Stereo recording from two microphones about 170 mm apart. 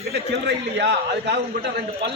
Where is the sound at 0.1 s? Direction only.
80° right.